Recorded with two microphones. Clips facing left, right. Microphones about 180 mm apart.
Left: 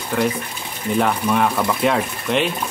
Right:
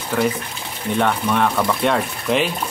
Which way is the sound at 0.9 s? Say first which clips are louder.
Left 1 dB; 5° left (ahead or behind).